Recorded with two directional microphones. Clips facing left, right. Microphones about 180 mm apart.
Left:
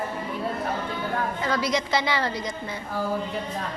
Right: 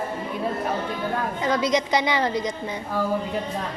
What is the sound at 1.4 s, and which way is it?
A woman's voice, 20° right (ahead or behind).